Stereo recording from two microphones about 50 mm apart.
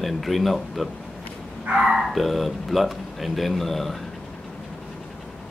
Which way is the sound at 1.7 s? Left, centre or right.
Right.